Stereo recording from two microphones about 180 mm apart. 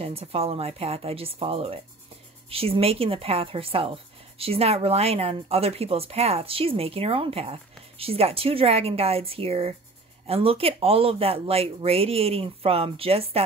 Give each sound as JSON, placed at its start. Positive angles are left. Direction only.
{"t": 0.0, "sound": "speech", "side_deg": -35}